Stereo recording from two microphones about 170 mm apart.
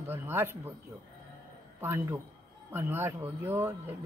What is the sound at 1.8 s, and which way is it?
Speech, 15° right (ahead or behind).